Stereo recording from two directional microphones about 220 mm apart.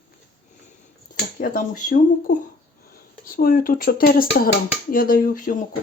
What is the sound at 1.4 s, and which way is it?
Speech, 35° left (ahead or behind).